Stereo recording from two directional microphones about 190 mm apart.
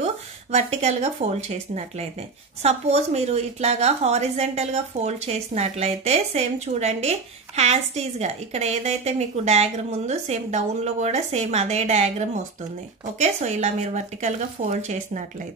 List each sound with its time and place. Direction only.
0.0 s speech: 35° right (ahead or behind)